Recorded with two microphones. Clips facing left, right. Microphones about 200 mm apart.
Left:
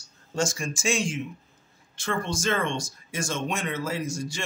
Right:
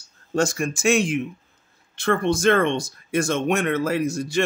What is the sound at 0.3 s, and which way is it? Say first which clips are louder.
Speech: right 6 dB; 60° right (ahead or behind).